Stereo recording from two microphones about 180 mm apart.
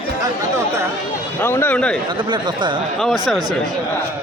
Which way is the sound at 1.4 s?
10° left (ahead or behind).